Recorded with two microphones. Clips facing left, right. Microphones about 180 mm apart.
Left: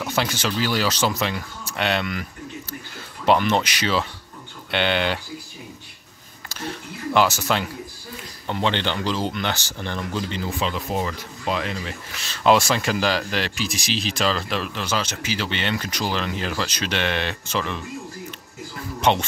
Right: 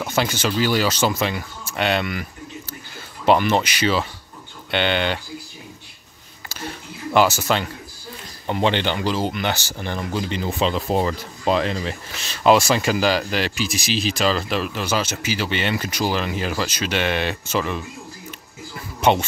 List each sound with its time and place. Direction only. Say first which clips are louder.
0.0 s speech: right 2 dB; centre (ahead or behind)
3.3 s speech: right 2 dB; 5° right (ahead or behind)
7.2 s speech: right 2 dB; 5° right (ahead or behind)
8.5 s speech: right 3 dB; 15° right (ahead or behind)
10.7 s speech: right 5 dB; 35° right (ahead or behind)
12.4 s speech: right 2 dB; 5° right (ahead or behind)
18.9 s a man's voice: right 2 dB; 5° right (ahead or behind)